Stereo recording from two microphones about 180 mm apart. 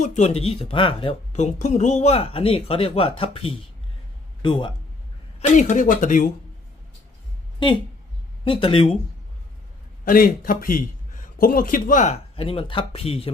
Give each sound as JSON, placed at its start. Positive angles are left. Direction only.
{"t": 0.0, "sound": "speech", "side_deg": 35}
{"t": 5.4, "sound": "a man's voice", "side_deg": 45}
{"t": 8.4, "sound": "speech", "side_deg": 30}
{"t": 10.1, "sound": "a man's voice", "side_deg": 50}